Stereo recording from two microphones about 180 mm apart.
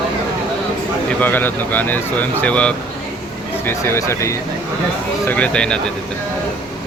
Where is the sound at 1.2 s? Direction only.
10° left (ahead or behind).